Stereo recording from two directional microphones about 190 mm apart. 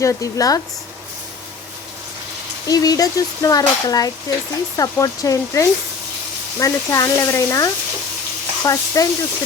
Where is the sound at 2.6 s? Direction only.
20° left (ahead or behind).